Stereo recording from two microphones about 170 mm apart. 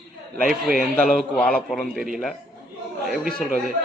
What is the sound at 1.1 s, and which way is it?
Speech, centre (ahead or behind).